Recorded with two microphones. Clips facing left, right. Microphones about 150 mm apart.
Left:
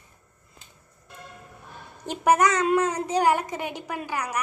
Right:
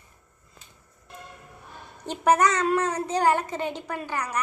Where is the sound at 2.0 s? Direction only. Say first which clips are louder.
Even; 10° left (ahead or behind).